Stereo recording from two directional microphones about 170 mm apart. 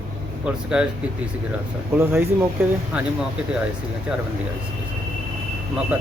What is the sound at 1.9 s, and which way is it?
Speech, 15° right (ahead or behind).